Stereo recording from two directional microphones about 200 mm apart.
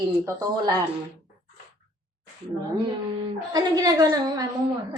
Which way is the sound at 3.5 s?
20° right (ahead or behind).